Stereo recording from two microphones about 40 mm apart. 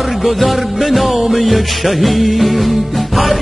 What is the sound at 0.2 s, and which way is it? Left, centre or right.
Music, centre.